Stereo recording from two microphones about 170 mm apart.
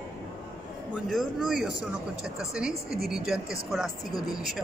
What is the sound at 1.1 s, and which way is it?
A woman's voice, centre (ahead or behind).